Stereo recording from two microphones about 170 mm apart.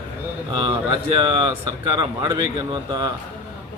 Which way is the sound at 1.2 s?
30° right (ahead or behind).